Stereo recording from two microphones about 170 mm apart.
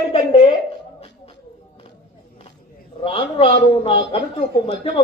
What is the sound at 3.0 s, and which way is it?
A man's voice, 35° left (ahead or behind).